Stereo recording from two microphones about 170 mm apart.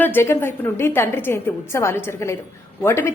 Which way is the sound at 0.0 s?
15° left (ahead or behind).